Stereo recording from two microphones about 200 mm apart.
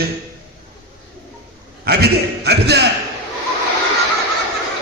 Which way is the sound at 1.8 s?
55° right (ahead or behind).